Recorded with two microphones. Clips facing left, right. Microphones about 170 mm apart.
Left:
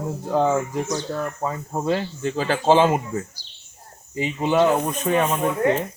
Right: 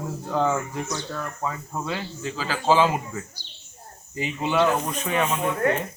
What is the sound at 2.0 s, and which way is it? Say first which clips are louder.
Speech: left 6 dB; 55° left (ahead or behind).